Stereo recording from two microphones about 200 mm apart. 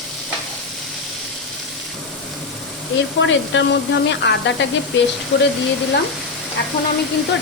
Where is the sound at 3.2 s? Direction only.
65° left (ahead or behind).